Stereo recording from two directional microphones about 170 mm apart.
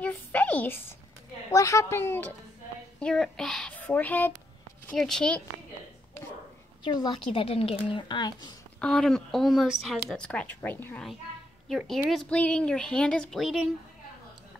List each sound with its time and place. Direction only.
0.0 s a sound: 10° left (ahead or behind)
1.5 s a woman's voice: 20° left (ahead or behind)
3.0 s a woman's voice: 5° left (ahead or behind)
6.8 s a woman's voice: 25° left (ahead or behind)
8.8 s a woman's voice: 5° left (ahead or behind)